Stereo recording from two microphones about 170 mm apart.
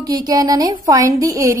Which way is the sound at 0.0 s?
20° right (ahead or behind).